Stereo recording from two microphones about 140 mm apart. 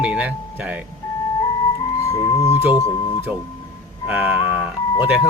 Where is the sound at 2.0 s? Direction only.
25° left (ahead or behind).